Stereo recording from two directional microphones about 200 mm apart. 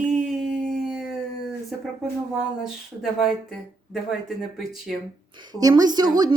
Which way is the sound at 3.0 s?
Centre (ahead or behind).